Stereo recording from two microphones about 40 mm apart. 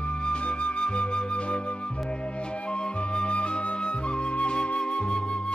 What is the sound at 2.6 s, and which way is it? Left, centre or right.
Flute, left.